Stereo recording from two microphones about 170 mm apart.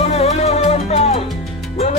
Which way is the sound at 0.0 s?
40° left (ahead or behind).